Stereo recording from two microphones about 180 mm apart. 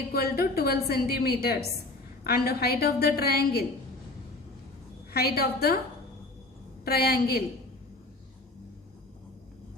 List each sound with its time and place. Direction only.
0.1 s a woman's voice: 60° left (ahead or behind)
5.1 s a woman's voice: 60° left (ahead or behind)
6.8 s a woman's voice: 60° left (ahead or behind)